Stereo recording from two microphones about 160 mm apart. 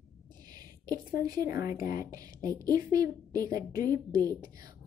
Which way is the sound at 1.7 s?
60° left (ahead or behind).